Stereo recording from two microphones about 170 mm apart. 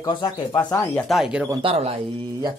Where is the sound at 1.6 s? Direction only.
35° right (ahead or behind).